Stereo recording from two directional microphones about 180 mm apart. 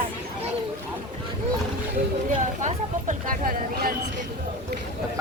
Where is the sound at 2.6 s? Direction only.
45° right (ahead or behind).